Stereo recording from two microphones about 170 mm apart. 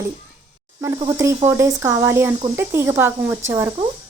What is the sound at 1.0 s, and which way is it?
Speech, 20° right (ahead or behind).